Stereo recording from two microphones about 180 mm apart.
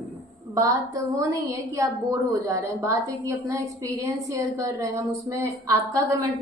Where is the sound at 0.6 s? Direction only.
20° right (ahead or behind).